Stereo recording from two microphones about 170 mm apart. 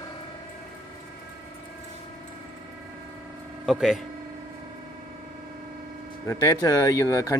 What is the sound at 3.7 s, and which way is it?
Speech, centre (ahead or behind).